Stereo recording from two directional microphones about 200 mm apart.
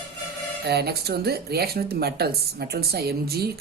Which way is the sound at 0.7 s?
55° right (ahead or behind).